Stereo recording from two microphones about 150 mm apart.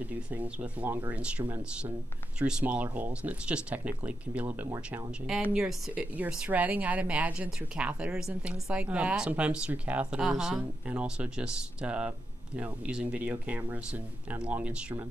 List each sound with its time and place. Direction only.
0.0 s speech: 10° right (ahead or behind)